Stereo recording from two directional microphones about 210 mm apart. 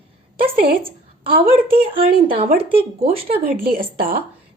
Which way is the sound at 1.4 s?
25° right (ahead or behind).